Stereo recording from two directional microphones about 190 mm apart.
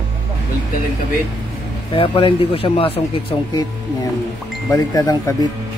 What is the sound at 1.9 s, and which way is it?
Speech, 25° left (ahead or behind).